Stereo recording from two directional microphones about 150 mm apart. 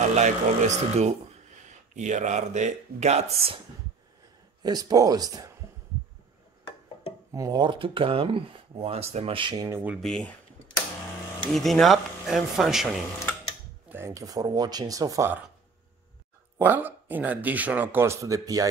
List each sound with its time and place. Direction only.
0.1 s speech: 50° right (ahead or behind)
4.6 s speech: 25° right (ahead or behind)
7.3 s speech: 25° right (ahead or behind)
9.9 s speech: 5° left (ahead or behind)
11.5 s speech: centre (ahead or behind)
13.8 s speech: 15° right (ahead or behind)
16.5 s speech: 15° right (ahead or behind)